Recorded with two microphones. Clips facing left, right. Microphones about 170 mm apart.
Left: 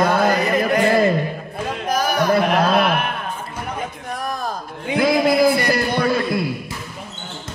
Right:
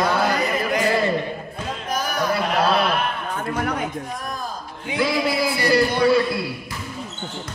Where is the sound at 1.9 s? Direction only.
70° left (ahead or behind).